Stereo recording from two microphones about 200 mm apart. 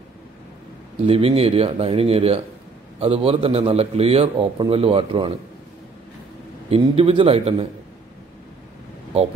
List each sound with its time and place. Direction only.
1.0 s a man's voice: 30° right (ahead or behind)
6.7 s a man's voice: 30° right (ahead or behind)